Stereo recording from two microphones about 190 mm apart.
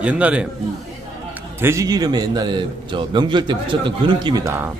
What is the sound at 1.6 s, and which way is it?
A man's voice, 15° right (ahead or behind).